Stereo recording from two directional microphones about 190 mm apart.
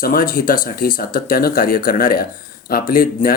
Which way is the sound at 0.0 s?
50° left (ahead or behind).